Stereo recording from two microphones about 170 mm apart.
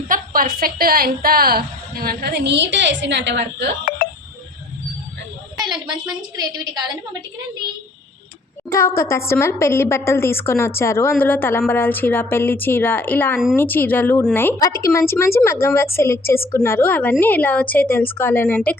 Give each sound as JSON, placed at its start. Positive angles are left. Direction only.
{"t": 0.1, "sound": "a woman's voice", "side_deg": -55}
{"t": 5.6, "sound": "a woman's voice", "side_deg": -25}
{"t": 9.0, "sound": "a woman's voice", "side_deg": 15}